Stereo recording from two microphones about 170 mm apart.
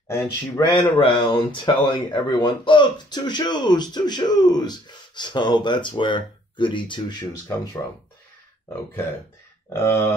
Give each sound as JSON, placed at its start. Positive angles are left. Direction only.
{"t": 0.1, "sound": "speech", "side_deg": 20}
{"t": 9.7, "sound": "speech", "side_deg": 15}